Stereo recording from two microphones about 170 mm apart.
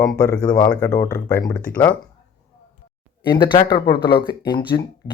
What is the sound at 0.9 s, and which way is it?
Speech, 20° left (ahead or behind).